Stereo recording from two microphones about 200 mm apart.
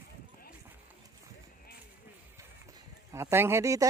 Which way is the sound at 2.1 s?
10° right (ahead or behind).